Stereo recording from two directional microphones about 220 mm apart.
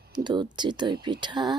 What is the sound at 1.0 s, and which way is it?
Speech, 20° right (ahead or behind).